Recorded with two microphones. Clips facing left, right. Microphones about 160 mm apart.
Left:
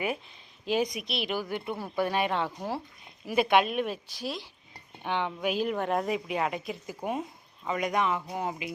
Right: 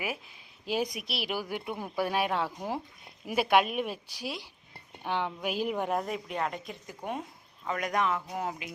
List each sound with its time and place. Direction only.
0.6 s a woman's voice: 5° right (ahead or behind)
6.0 s speech: 5° left (ahead or behind)